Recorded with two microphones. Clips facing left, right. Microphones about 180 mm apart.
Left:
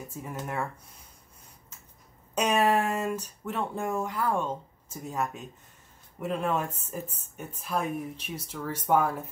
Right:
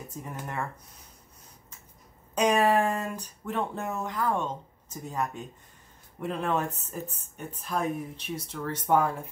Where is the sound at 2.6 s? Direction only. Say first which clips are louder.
Right 1 dB; 35° right (ahead or behind).